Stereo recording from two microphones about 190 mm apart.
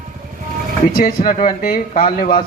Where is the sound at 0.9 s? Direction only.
50° left (ahead or behind).